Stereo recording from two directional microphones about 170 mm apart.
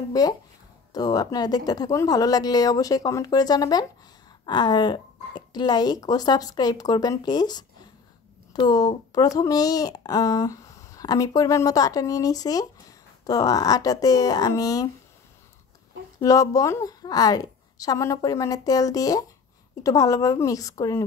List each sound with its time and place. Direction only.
0.1 s speech: 20° left (ahead or behind)
16.2 s speech: 20° left (ahead or behind)